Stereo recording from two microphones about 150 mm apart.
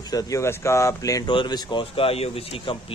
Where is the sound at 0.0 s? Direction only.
25° left (ahead or behind).